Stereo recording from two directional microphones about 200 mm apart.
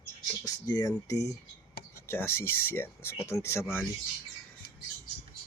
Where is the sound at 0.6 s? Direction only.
20° left (ahead or behind).